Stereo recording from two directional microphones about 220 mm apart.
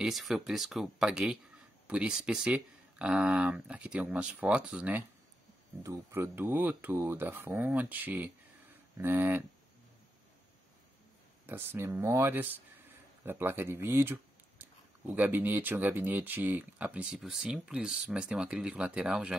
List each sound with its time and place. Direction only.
0.0 s speech: centre (ahead or behind)
11.4 s speech: 10° right (ahead or behind)